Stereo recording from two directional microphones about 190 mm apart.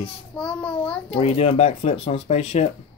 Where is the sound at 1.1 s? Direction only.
30° left (ahead or behind).